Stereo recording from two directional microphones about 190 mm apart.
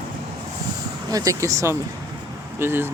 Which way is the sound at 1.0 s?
20° right (ahead or behind).